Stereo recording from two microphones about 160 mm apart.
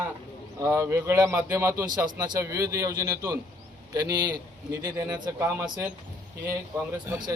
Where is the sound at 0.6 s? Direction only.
15° right (ahead or behind).